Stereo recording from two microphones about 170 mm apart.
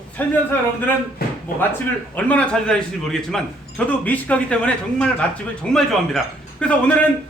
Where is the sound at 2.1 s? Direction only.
10° left (ahead or behind).